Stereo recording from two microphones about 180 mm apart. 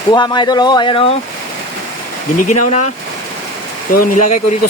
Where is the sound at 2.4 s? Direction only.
45° left (ahead or behind).